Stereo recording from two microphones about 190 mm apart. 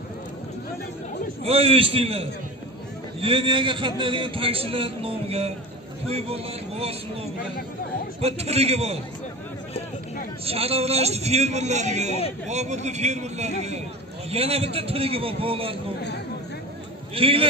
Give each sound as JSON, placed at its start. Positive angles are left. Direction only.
{"t": 1.4, "sound": "a man's voice", "side_deg": -30}
{"t": 8.2, "sound": "a man's voice", "side_deg": -35}
{"t": 10.4, "sound": "a man's voice", "side_deg": -30}
{"t": 17.1, "sound": "a man's voice", "side_deg": -30}